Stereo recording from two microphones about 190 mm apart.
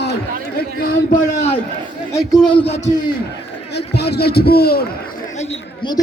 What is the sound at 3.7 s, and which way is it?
A man's voice, 60° left (ahead or behind).